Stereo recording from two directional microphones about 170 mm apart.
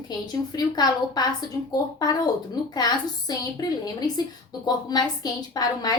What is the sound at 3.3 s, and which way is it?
A woman's voice, 25° left (ahead or behind).